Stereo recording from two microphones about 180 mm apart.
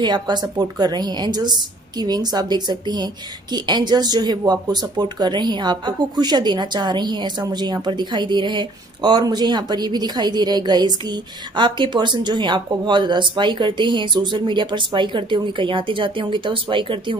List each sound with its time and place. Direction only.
0.0 s speech: 25° right (ahead or behind)